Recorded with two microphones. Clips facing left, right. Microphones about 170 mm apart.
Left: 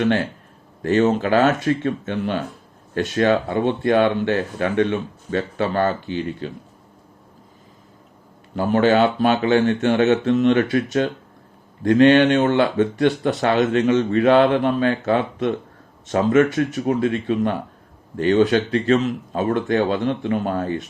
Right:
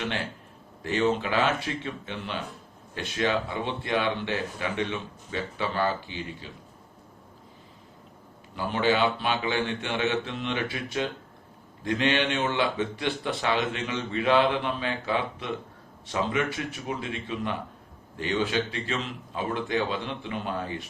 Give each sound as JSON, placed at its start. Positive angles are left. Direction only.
{"t": 0.8, "sound": "speech", "side_deg": 45}
{"t": 8.5, "sound": "speech", "side_deg": 45}
{"t": 16.6, "sound": "speech", "side_deg": 60}